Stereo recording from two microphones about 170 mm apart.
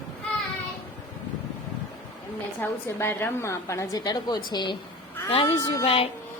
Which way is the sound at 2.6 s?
15° left (ahead or behind).